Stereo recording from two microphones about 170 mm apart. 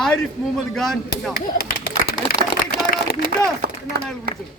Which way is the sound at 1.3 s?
65° left (ahead or behind).